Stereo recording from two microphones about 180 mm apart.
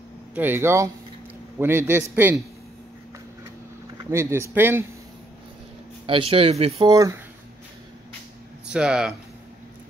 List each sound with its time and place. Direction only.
0.3 s speech: 10° right (ahead or behind)
4.0 s speech: 15° right (ahead or behind)
6.0 s speech: 30° right (ahead or behind)
6.9 s speech: 20° right (ahead or behind)
8.6 s speech: 5° right (ahead or behind)